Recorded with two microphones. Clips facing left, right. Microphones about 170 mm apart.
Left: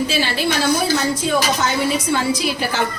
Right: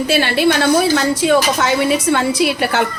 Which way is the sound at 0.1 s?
60° right (ahead or behind).